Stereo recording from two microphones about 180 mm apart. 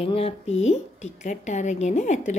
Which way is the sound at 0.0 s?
35° left (ahead or behind).